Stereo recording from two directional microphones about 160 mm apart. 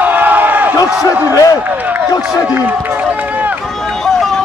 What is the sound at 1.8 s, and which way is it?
Speech, 10° right (ahead or behind).